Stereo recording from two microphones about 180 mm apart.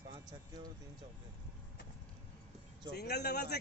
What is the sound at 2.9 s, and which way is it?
Speech, 65° left (ahead or behind).